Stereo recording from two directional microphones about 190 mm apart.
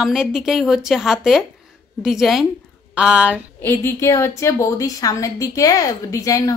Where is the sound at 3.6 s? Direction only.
15° left (ahead or behind).